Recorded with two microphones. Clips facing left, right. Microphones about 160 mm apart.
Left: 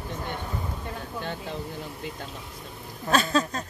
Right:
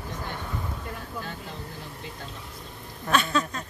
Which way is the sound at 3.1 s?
35° left (ahead or behind).